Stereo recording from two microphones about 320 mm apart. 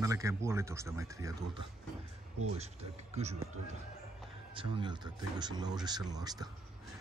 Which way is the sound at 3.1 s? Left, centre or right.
Right.